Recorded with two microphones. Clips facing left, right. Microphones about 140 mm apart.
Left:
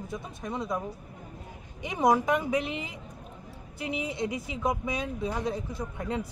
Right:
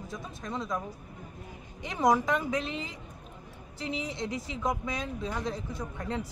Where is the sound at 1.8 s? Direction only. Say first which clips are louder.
Left 1 dB; 10° left (ahead or behind).